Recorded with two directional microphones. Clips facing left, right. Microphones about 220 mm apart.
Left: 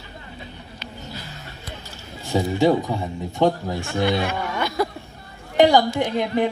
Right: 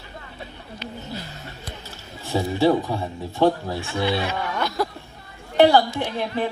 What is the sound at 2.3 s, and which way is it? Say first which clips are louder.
A woman's voice: left 1 dB; 15° left (ahead or behind).